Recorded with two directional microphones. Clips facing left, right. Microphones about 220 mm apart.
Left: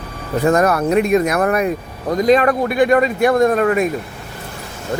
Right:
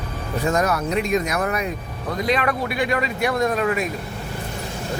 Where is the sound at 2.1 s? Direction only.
45° left (ahead or behind).